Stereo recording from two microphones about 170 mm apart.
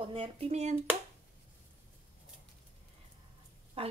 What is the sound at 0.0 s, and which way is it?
Speech, 35° right (ahead or behind).